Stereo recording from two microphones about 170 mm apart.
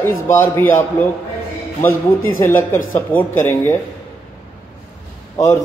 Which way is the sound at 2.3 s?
15° left (ahead or behind).